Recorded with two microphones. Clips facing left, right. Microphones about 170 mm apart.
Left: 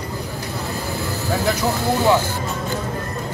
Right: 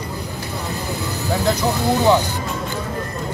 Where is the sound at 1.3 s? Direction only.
20° right (ahead or behind).